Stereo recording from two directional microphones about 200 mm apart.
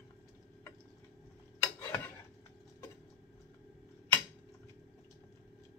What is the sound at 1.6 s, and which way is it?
Tick-tock, 10° left (ahead or behind).